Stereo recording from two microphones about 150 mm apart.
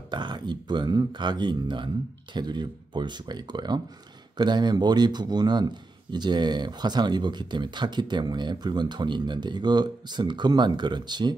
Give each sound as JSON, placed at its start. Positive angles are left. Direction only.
{"t": 0.1, "sound": "a man's voice", "side_deg": -30}